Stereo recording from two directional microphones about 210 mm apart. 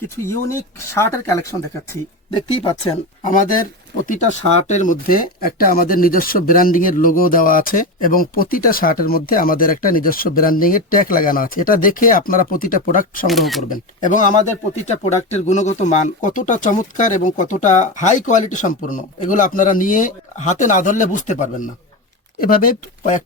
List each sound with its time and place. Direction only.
0.3 s speech: 15° left (ahead or behind)
4.0 s speech: 35° left (ahead or behind)
13.2 s speech: centre (ahead or behind)
13.7 s speech: 40° left (ahead or behind)